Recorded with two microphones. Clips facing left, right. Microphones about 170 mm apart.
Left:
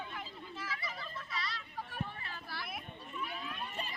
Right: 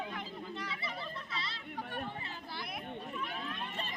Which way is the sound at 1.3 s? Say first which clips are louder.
Left 3 dB; 25° right (ahead or behind).